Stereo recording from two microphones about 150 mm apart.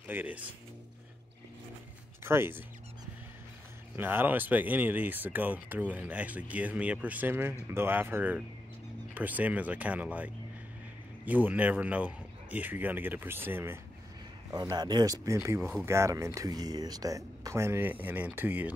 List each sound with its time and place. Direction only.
0.1 s speech: 10° right (ahead or behind)
2.2 s speech: 15° right (ahead or behind)
3.9 s speech: 15° right (ahead or behind)
14.5 s speech: 25° right (ahead or behind)